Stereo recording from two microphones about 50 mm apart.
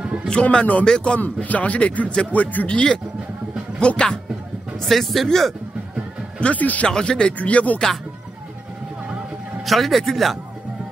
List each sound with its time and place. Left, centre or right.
0.0 s a sound: centre
0.3 s speech: left
1.2 s speech: left
2.7 s speech: centre
4.8 s speech: centre
6.4 s speech: left
6.9 s speech: centre
7.3 s speech: left
9.7 s speech: centre